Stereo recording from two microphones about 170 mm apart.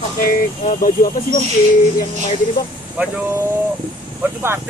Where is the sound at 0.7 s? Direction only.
50° left (ahead or behind).